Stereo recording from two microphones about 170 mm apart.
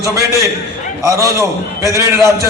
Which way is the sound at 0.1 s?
15° right (ahead or behind).